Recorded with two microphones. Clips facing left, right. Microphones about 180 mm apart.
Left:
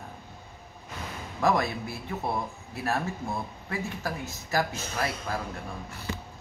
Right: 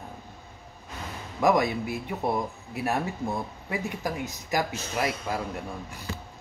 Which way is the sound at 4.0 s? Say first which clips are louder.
Right 3 dB; 15° right (ahead or behind).